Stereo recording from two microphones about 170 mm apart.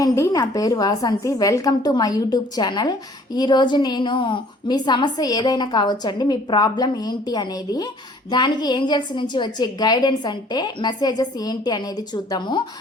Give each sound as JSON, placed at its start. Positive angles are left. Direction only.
{"t": 0.0, "sound": "a woman's voice", "side_deg": 20}